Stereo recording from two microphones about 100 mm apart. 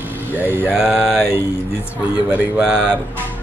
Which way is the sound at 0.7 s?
5° right (ahead or behind).